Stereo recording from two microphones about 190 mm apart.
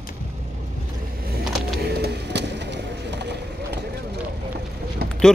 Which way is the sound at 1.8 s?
60° right (ahead or behind).